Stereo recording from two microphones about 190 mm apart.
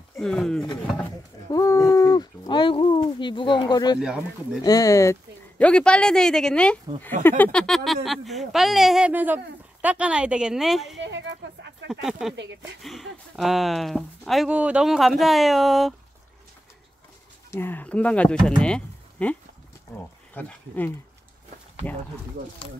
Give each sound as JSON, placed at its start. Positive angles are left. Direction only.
{"t": 0.2, "sound": "speech", "side_deg": 5}
{"t": 1.5, "sound": "a sound", "side_deg": 15}
{"t": 4.6, "sound": "speech", "side_deg": 20}
{"t": 5.6, "sound": "speech", "side_deg": 5}
{"t": 11.0, "sound": "a sound", "side_deg": -70}
{"t": 11.9, "sound": "speech", "side_deg": 0}
{"t": 17.5, "sound": "speech", "side_deg": 10}
{"t": 20.3, "sound": "speech", "side_deg": 10}